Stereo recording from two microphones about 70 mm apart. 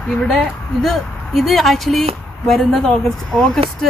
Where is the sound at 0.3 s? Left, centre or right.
Centre.